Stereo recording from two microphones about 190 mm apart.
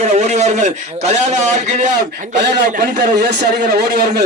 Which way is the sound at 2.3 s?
60° right (ahead or behind).